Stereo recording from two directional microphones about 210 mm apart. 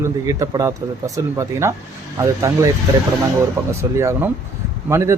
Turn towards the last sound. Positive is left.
turn(degrees=-15)  # may be behind; listen again after turning